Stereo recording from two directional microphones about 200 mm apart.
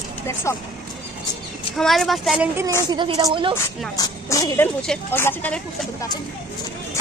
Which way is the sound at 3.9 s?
20° left (ahead or behind).